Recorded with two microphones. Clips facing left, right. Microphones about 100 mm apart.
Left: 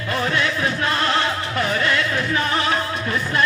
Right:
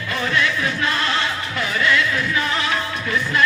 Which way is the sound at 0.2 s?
35° left (ahead or behind).